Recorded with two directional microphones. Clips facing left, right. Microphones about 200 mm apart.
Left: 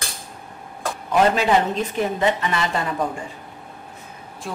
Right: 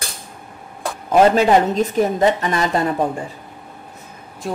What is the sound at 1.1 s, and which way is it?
A woman's voice, 40° right (ahead or behind).